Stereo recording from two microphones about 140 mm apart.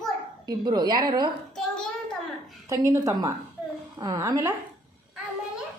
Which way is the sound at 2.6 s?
20° right (ahead or behind).